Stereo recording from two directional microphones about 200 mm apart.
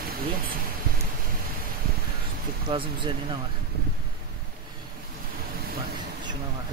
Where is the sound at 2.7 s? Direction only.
25° right (ahead or behind).